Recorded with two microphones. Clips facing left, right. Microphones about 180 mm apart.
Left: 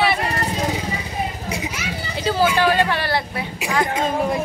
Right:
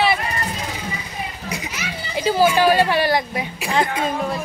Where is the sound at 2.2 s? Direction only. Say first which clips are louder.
Right 2 dB; 15° right (ahead or behind).